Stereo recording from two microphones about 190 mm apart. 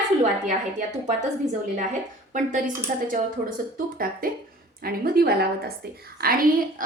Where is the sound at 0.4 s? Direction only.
40° right (ahead or behind).